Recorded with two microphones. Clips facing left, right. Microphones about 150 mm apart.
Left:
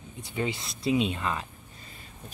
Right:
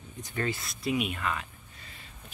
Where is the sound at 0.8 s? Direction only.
25° left (ahead or behind).